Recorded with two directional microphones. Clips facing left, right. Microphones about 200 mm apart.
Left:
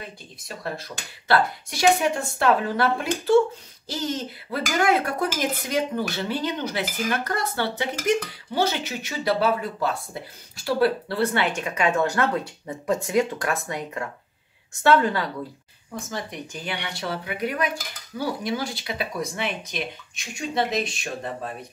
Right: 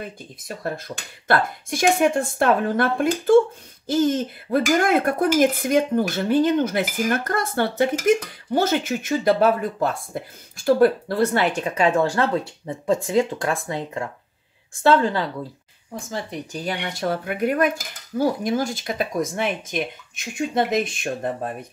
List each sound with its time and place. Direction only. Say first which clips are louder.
0.7 s hoot: right 3 dB; 50° right (ahead or behind); by 14.0 s 25° right (ahead or behind)
14.8 s speech: right 2 dB; 25° right (ahead or behind)
16.1 s hoot: right 5 dB; 30° right (ahead or behind); by 21.5 s 50° right (ahead or behind)